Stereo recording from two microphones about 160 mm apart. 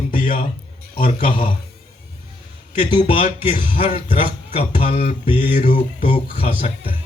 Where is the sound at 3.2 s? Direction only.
55° left (ahead or behind).